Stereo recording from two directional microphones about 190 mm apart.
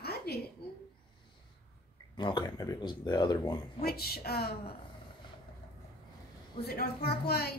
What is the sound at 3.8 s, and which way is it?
Speech, 55° left (ahead or behind).